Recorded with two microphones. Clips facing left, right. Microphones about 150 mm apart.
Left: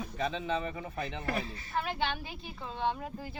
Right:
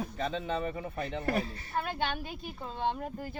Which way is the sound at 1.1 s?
50° right (ahead or behind).